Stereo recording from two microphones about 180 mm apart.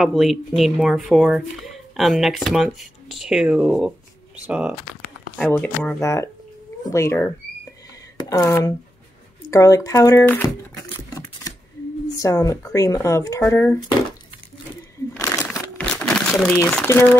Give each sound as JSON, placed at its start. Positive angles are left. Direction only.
{"t": 0.0, "sound": "speech", "side_deg": 0}
{"t": 5.4, "sound": "speech", "side_deg": 10}
{"t": 15.2, "sound": "crumpling", "side_deg": 15}
{"t": 15.8, "sound": "crumpling", "side_deg": 5}